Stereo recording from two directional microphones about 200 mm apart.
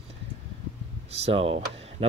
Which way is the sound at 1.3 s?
30° right (ahead or behind).